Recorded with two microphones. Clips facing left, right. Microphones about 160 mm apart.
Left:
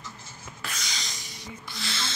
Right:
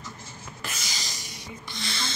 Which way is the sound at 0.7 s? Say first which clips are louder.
Even; 5° right (ahead or behind).